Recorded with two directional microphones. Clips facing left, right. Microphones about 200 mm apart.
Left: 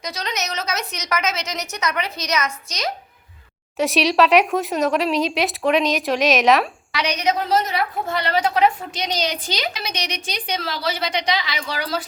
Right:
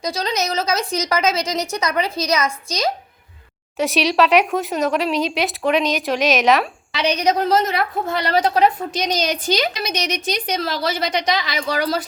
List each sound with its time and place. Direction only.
0.0 s a woman's voice: 30° right (ahead or behind)
3.8 s speech: centre (ahead or behind)
6.9 s a woman's voice: 30° right (ahead or behind)
7.5 s a woman's voice: 45° right (ahead or behind)